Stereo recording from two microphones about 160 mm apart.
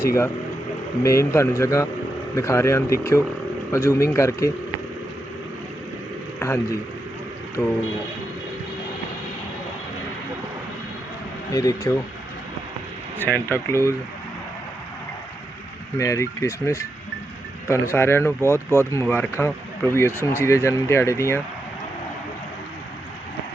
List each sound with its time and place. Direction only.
0.0 s speech: 15° left (ahead or behind)
6.4 s a man's voice: 20° left (ahead or behind)
11.5 s speech: 20° left (ahead or behind)
13.2 s speech: 10° left (ahead or behind)
16.0 s speech: 20° left (ahead or behind)